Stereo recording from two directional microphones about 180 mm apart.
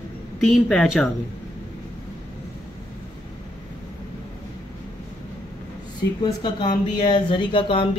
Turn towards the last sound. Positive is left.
turn(degrees=30)  # may be behind; listen again after turning